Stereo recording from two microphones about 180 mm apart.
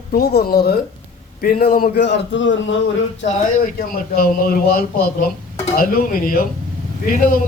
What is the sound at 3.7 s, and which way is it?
Speech, 55° left (ahead or behind).